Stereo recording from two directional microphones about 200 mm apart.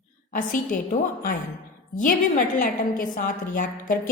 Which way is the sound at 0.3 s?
40° left (ahead or behind).